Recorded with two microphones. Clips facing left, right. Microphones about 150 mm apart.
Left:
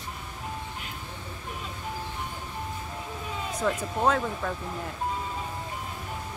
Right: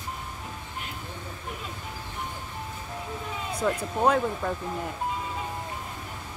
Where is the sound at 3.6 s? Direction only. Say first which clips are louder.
Right 1 dB; 5° right (ahead or behind).